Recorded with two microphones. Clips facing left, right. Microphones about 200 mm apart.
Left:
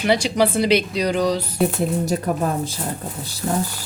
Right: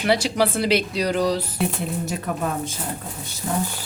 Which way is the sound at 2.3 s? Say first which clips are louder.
Left 5 dB; 40° left (ahead or behind).